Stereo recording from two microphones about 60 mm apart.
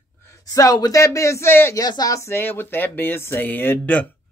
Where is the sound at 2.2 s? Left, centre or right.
Left.